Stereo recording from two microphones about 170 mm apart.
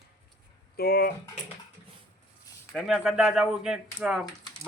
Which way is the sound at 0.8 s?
65° left (ahead or behind).